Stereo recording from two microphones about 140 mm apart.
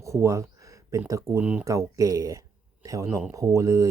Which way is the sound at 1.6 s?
25° right (ahead or behind).